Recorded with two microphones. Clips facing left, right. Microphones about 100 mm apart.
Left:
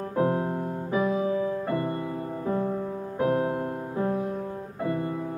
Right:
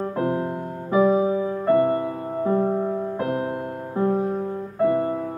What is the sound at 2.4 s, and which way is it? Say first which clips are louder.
Music: right 7 dB; 50° right (ahead or behind).